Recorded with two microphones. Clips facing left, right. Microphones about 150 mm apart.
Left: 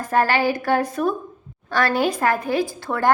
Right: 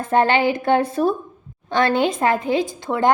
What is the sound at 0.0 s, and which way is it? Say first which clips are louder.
A woman's voice: right 2 dB; 25° right (ahead or behind).